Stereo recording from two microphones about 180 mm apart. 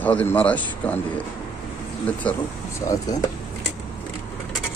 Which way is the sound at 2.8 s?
20° left (ahead or behind).